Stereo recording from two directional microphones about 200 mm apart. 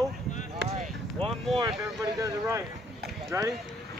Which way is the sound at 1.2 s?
30° right (ahead or behind).